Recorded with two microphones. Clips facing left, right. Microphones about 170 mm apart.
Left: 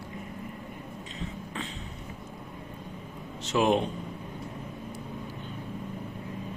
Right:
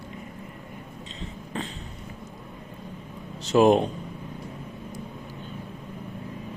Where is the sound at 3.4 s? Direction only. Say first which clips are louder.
Right 6 dB; 40° right (ahead or behind).